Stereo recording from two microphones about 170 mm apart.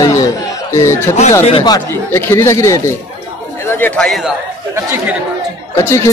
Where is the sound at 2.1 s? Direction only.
15° left (ahead or behind).